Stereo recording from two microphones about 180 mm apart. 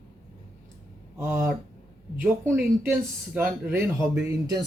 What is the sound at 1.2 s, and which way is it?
Speech, 15° right (ahead or behind).